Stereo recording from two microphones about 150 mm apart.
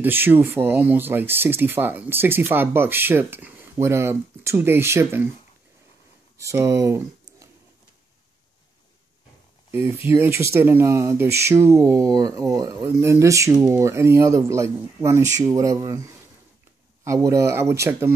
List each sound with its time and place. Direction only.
0.0 s speech: 15° right (ahead or behind)
6.4 s speech: 20° right (ahead or behind)
9.7 s speech: 15° right (ahead or behind)